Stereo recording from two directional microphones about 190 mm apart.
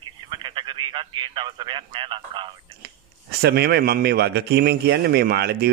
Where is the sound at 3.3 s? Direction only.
55° right (ahead or behind).